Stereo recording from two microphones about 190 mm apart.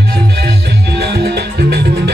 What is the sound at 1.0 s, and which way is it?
Music, 60° right (ahead or behind).